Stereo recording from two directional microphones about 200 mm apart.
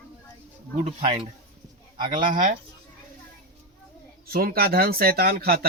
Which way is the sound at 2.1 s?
40° right (ahead or behind).